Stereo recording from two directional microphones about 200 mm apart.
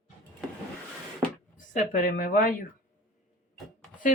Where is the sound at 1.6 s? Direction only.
40° left (ahead or behind).